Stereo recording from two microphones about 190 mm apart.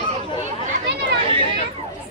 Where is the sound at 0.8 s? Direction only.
65° right (ahead or behind).